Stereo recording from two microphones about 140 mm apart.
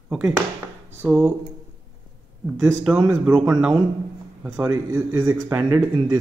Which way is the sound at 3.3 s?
25° right (ahead or behind).